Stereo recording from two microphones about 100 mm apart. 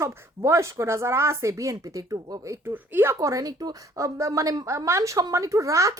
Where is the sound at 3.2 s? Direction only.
35° right (ahead or behind).